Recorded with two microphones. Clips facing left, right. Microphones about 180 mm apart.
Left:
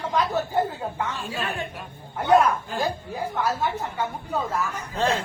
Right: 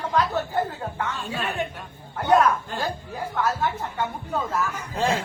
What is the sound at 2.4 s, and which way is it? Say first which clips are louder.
Speech: right 1 dB; 10° left (ahead or behind).